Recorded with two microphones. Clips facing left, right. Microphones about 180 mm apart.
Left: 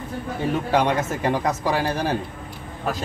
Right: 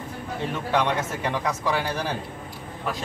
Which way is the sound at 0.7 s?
40° left (ahead or behind).